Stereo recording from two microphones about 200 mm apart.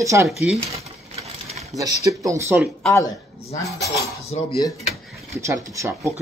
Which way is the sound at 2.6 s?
Centre (ahead or behind).